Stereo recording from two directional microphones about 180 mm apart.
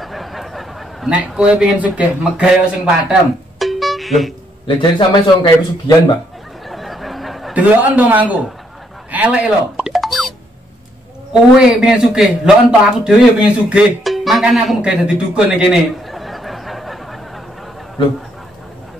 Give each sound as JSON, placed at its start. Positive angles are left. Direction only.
{"t": 0.0, "sound": "a sound", "side_deg": 0}
{"t": 4.6, "sound": "a man's voice", "side_deg": 25}
{"t": 6.7, "sound": "chuckle", "side_deg": 0}
{"t": 9.1, "sound": "plop", "side_deg": -10}
{"t": 11.6, "sound": "a man's voice", "side_deg": -5}